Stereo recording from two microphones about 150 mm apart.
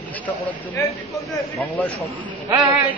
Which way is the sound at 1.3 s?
20° left (ahead or behind).